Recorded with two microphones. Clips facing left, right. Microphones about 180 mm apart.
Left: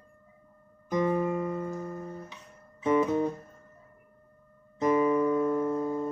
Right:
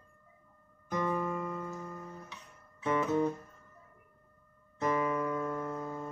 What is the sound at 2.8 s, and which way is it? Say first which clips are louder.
Guitar: left 4 dB; 15° left (ahead or behind).